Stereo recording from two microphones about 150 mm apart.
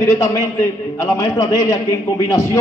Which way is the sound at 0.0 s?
20° left (ahead or behind).